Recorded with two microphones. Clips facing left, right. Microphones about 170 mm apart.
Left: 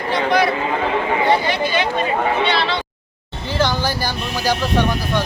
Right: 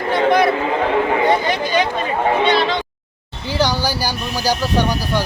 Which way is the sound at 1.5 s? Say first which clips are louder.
Right 1 dB; 40° right (ahead or behind).